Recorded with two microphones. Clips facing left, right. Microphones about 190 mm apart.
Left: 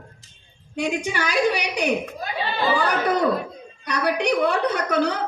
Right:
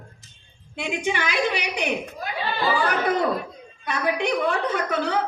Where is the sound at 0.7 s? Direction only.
40° left (ahead or behind).